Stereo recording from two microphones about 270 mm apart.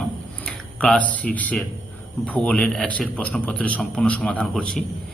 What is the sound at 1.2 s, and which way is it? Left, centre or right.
A man's voice, centre.